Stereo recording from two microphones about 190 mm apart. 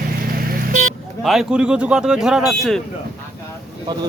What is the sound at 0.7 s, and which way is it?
Vehicle, 40° right (ahead or behind).